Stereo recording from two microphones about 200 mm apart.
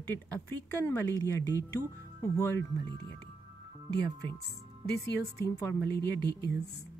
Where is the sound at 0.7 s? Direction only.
10° left (ahead or behind).